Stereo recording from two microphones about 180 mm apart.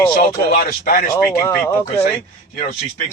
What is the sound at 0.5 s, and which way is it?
Speech, 50° left (ahead or behind).